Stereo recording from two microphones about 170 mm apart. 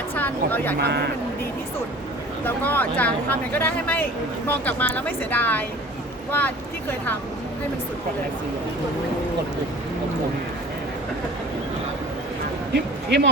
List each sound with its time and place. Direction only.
0.2 s speech: 10° left (ahead or behind)
0.8 s speech: 75° right (ahead or behind)
2.4 s speech: 10° left (ahead or behind)
12.7 s speech: 90° right